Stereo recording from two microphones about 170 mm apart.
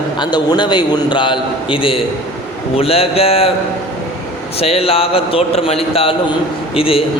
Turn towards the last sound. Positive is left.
turn(degrees=35)  # may be behind; listen again after turning